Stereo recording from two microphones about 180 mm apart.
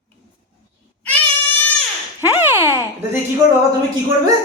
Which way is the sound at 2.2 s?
10° right (ahead or behind).